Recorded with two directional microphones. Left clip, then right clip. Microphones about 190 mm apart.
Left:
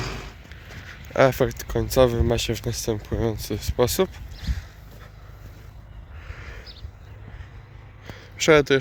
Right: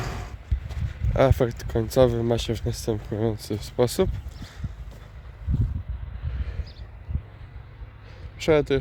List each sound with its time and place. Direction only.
0.9 s speech: 5° right (ahead or behind)
4.4 s clip-clop: 15° right (ahead or behind)
8.1 s a sound: 5° left (ahead or behind)